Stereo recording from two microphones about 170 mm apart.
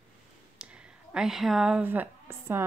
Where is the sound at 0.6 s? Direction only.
5° right (ahead or behind).